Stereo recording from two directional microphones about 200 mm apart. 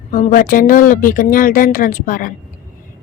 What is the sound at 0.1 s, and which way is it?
A woman's voice, 40° left (ahead or behind).